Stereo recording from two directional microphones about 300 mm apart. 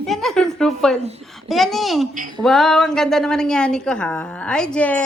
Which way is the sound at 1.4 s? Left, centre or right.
Centre.